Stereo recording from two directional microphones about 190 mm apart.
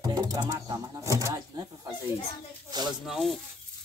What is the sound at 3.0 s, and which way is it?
Speech, centre (ahead or behind).